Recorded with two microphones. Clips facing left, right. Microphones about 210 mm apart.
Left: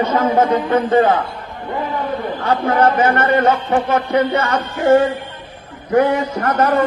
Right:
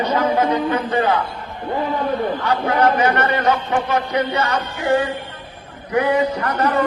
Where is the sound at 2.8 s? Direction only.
50° left (ahead or behind).